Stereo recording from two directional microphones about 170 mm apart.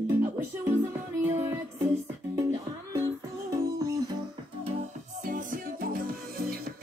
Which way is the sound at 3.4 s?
20° right (ahead or behind).